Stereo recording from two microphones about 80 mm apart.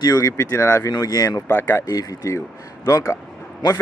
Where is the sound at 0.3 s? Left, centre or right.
Left.